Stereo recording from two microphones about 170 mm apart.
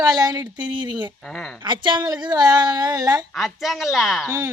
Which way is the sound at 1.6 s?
25° right (ahead or behind).